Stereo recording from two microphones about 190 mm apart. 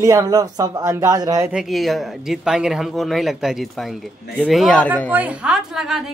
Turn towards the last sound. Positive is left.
turn(degrees=0)  # may be behind; listen again after turning